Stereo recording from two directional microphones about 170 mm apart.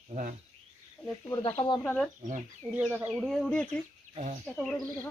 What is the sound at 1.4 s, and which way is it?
Speech, 30° left (ahead or behind).